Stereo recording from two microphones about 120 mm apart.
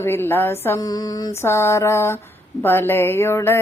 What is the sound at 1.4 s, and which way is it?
Female singing, 20° left (ahead or behind).